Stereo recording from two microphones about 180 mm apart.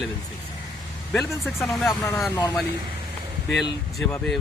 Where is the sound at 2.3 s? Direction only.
20° left (ahead or behind).